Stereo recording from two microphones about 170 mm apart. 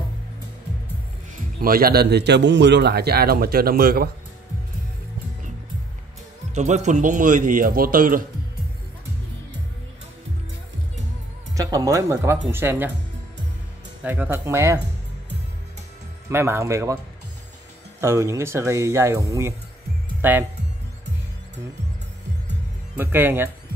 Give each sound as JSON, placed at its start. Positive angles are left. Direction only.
{"t": 1.6, "sound": "a man's voice", "side_deg": -60}
{"t": 6.5, "sound": "speech", "side_deg": -45}
{"t": 11.5, "sound": "speech", "side_deg": -20}
{"t": 14.0, "sound": "speech", "side_deg": -10}
{"t": 16.3, "sound": "speech", "side_deg": -15}
{"t": 18.0, "sound": "speech", "side_deg": -15}
{"t": 22.9, "sound": "speech", "side_deg": -10}